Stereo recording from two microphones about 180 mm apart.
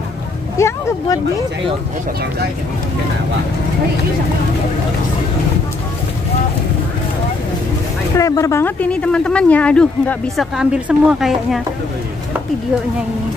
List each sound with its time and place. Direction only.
0.6 s speech: 15° left (ahead or behind)
8.2 s speech: 20° left (ahead or behind); by 11.6 s centre (ahead or behind)